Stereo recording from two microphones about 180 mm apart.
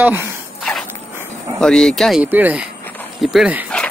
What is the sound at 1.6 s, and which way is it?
Speech, 5° left (ahead or behind).